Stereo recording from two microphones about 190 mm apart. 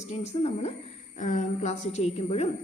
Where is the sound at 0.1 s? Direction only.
35° left (ahead or behind).